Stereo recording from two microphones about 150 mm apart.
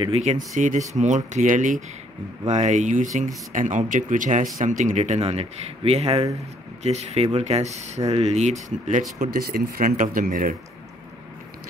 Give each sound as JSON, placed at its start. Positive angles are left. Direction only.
{"t": 0.1, "sound": "speech", "side_deg": -50}
{"t": 9.3, "sound": "speech", "side_deg": -75}